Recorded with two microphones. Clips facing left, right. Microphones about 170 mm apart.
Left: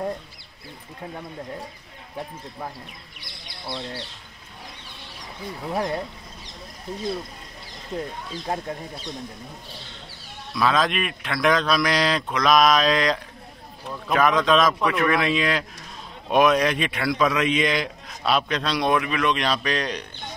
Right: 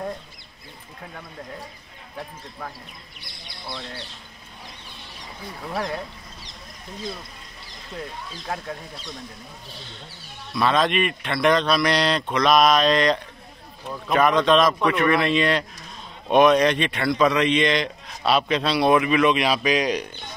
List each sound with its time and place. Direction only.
5.7 s speech: 20° left (ahead or behind)
10.5 s a man's voice: centre (ahead or behind)